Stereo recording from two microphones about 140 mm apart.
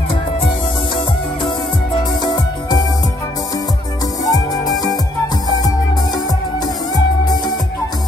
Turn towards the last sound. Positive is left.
turn(degrees=30)  # may be behind; listen again after turning